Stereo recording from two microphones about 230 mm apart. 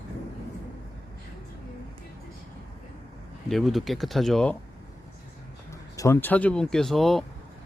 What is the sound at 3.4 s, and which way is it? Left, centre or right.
Speech, centre.